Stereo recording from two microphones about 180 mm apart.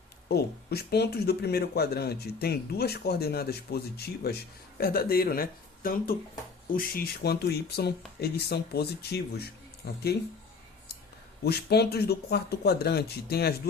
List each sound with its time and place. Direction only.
0.3 s speech: 60° left (ahead or behind)
11.4 s speech: 65° left (ahead or behind)